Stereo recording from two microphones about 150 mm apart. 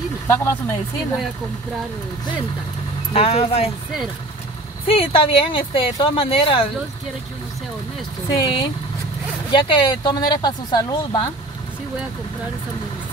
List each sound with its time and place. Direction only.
0.3 s speech: 15° left (ahead or behind)
3.1 s speech: 40° left (ahead or behind)
4.8 s speech: 35° left (ahead or behind)
8.4 s speech: 30° left (ahead or behind)